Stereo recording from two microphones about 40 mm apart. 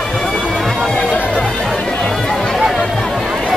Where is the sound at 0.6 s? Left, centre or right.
Centre.